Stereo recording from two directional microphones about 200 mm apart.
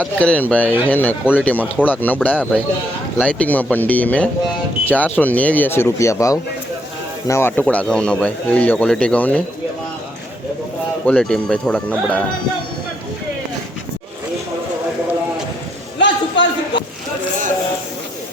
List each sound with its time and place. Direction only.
0.0 s a man's voice: 5° left (ahead or behind)
11.0 s speech: 5° left (ahead or behind)
16.0 s a sound: 65° left (ahead or behind)